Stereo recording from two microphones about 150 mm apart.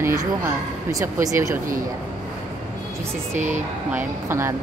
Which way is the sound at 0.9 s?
20° right (ahead or behind).